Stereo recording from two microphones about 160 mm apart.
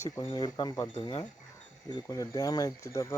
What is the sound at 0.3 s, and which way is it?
Speech, 25° left (ahead or behind).